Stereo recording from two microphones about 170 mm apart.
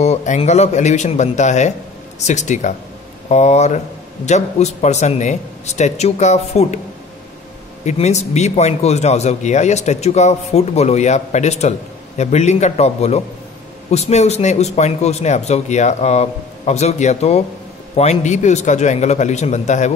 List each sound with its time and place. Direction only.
0.0 s a man's voice: 40° left (ahead or behind)
7.8 s a man's voice: 40° left (ahead or behind)